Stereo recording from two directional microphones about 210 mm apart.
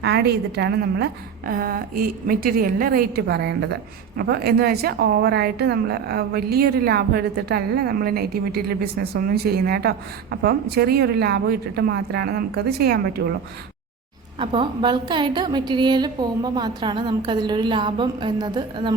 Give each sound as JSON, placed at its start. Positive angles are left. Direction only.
{"t": 0.0, "sound": "a woman's voice", "side_deg": -50}
{"t": 14.3, "sound": "a woman's voice", "side_deg": -25}